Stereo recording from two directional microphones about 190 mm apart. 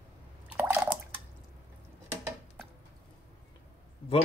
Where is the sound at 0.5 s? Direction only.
10° right (ahead or behind).